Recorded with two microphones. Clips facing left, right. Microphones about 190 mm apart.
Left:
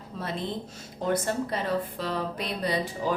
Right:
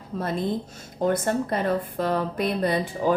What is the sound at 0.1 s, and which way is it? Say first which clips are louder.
A woman's voice: right 6 dB; 50° right (ahead or behind).